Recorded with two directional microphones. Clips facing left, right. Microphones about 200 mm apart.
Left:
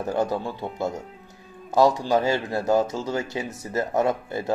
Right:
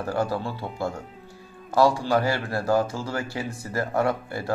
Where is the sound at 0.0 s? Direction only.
20° left (ahead or behind).